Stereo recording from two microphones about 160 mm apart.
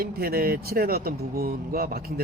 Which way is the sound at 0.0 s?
70° right (ahead or behind).